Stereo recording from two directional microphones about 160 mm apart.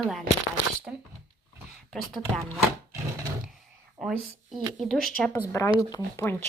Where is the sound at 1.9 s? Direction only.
Centre (ahead or behind).